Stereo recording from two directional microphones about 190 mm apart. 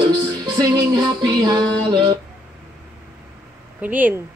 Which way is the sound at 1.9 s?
25° right (ahead or behind).